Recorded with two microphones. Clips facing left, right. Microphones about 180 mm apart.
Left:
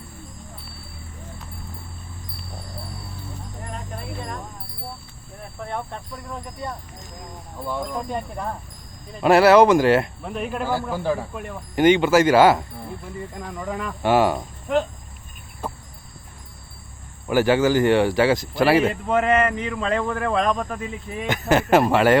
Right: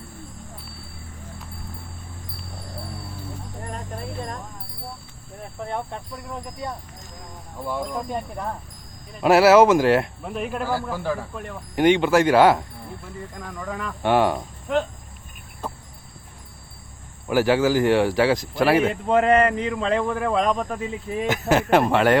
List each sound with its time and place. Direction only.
5.5 s speech: 20° right (ahead or behind); by 10.8 s centre (ahead or behind)
10.9 s speech: 25° left (ahead or behind)
11.3 s speech: 5° left (ahead or behind)
13.6 s speech: 15° left (ahead or behind)
14.0 s speech: 5° left (ahead or behind)
17.2 s speech: centre (ahead or behind)
19.0 s speech: 35° right (ahead or behind)
21.2 s speech: centre (ahead or behind)